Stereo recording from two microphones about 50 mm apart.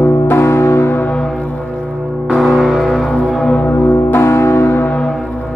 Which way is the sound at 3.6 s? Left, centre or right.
Left.